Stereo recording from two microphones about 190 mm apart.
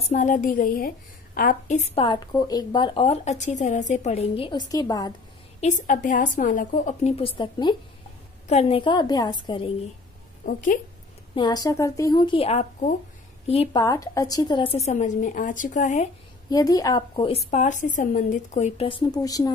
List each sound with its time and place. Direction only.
0.1 s a woman's voice: 40° left (ahead or behind); by 5.1 s 20° left (ahead or behind)
5.6 s a woman's voice: 40° left (ahead or behind); by 9.7 s 25° left (ahead or behind)
10.4 s speech: 45° left (ahead or behind)
11.3 s a woman's voice: 20° left (ahead or behind)
13.8 s a woman's voice: 15° left (ahead or behind); by 16.1 s 40° left (ahead or behind)
16.4 s a woman's voice: 20° left (ahead or behind)